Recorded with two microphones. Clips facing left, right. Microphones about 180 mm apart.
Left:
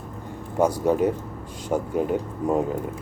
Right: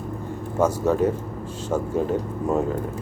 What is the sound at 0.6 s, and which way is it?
Speech, 10° left (ahead or behind).